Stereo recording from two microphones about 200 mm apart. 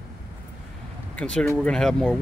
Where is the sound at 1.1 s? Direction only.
5° left (ahead or behind).